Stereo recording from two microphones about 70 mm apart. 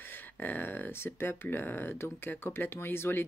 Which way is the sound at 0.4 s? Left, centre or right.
Left.